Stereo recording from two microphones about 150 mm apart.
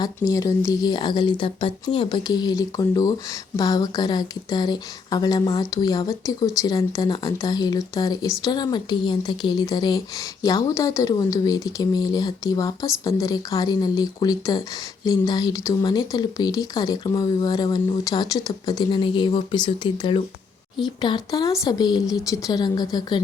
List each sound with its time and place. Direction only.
0.0 s speech: 25° left (ahead or behind)